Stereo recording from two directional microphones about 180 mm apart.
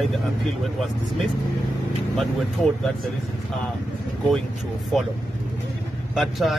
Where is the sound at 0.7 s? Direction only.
Centre (ahead or behind).